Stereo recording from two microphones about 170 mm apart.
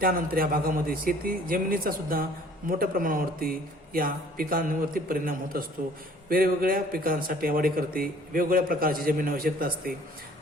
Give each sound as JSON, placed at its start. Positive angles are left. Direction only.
{"t": 0.0, "sound": "speech", "side_deg": -60}